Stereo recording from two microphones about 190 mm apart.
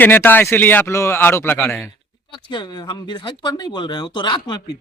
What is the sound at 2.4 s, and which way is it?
Speech, 25° left (ahead or behind).